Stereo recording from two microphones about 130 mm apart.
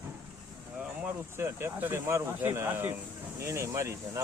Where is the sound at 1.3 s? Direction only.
20° right (ahead or behind).